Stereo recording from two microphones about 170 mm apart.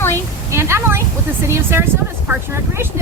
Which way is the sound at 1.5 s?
15° right (ahead or behind).